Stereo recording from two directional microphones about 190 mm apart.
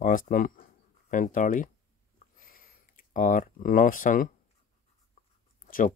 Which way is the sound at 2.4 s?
45° left (ahead or behind).